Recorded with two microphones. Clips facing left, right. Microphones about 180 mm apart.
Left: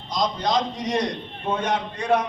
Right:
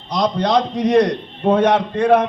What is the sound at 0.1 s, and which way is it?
A man's voice, 65° right (ahead or behind).